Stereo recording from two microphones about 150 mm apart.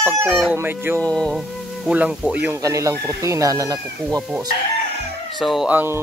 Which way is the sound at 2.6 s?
20° right (ahead or behind).